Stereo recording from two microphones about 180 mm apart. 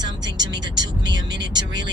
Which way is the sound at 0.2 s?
25° right (ahead or behind).